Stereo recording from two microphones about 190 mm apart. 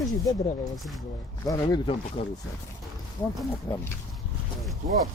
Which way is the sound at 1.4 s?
20° left (ahead or behind).